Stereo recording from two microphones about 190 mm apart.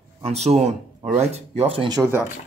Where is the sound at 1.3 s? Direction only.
30° right (ahead or behind).